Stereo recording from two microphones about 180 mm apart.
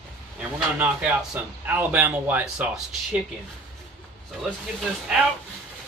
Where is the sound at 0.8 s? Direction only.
10° right (ahead or behind).